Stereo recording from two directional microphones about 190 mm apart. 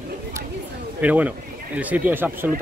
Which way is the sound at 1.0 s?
10° right (ahead or behind).